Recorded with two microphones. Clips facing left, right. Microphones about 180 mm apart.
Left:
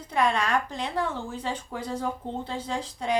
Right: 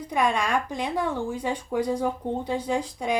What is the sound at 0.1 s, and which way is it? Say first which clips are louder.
A woman's voice: even; 10° right (ahead or behind).